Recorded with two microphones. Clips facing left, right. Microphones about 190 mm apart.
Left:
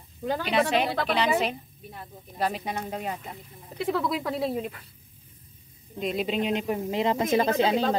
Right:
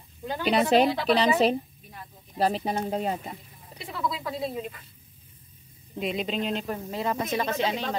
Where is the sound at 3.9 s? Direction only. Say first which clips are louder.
Right 1 dB; 90° left.